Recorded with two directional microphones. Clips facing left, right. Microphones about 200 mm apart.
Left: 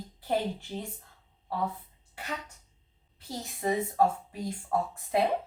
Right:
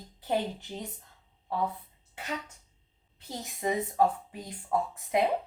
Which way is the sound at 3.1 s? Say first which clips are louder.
Left 1 dB; 20° right (ahead or behind).